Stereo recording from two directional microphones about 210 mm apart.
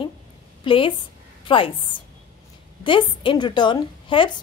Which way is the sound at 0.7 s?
25° left (ahead or behind).